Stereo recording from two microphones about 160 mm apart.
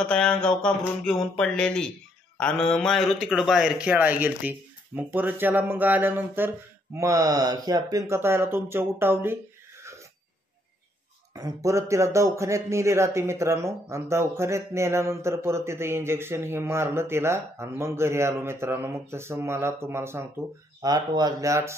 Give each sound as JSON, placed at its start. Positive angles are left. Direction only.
{"t": 0.0, "sound": "a sound", "side_deg": 5}
{"t": 2.3, "sound": "speech", "side_deg": 5}
{"t": 11.3, "sound": "speech", "side_deg": -20}